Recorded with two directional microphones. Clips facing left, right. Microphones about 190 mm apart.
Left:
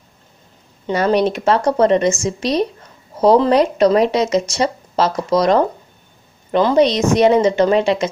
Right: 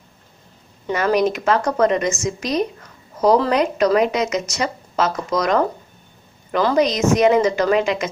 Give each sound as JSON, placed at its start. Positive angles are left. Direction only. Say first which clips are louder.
{"t": 0.9, "sound": "a woman's voice", "louder": "left 2 dB", "side_deg": 30}